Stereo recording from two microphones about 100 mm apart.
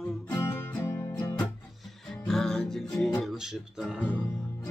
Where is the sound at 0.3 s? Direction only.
30° left (ahead or behind).